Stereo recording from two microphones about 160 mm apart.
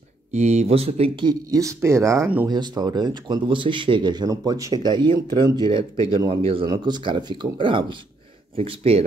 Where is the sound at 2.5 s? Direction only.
25° right (ahead or behind).